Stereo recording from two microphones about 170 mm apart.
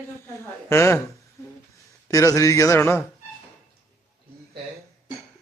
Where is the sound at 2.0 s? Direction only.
20° left (ahead or behind).